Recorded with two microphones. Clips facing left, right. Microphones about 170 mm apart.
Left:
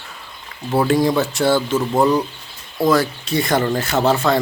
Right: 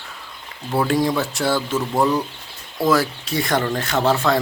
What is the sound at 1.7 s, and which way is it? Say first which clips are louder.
Speech: left 3 dB; 20° left (ahead or behind).